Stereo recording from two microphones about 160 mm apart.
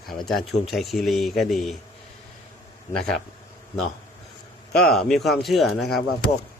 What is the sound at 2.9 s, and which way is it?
Speech, 5° left (ahead or behind).